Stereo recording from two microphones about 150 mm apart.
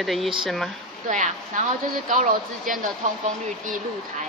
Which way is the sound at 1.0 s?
60° right (ahead or behind).